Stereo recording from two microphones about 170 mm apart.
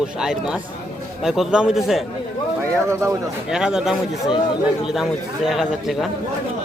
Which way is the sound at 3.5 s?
5° right (ahead or behind).